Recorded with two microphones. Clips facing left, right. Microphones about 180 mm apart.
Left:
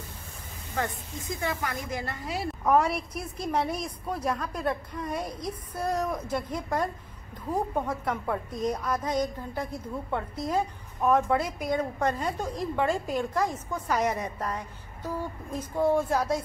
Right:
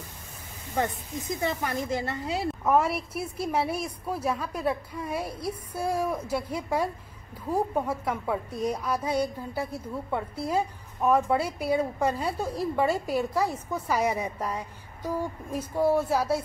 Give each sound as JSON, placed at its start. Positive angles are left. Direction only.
{"t": 1.2, "sound": "a woman's voice", "side_deg": -20}
{"t": 2.6, "sound": "a woman's voice", "side_deg": 0}